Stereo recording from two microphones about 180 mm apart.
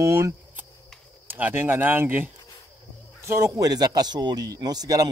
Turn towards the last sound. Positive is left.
turn(degrees=-20)  # may be behind; listen again after turning